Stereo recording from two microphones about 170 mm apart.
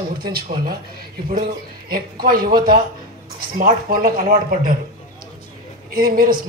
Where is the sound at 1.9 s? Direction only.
60° right (ahead or behind).